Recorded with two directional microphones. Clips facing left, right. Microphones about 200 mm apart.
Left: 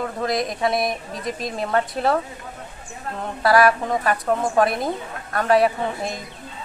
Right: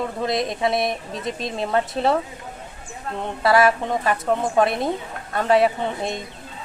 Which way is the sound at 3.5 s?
25° right (ahead or behind).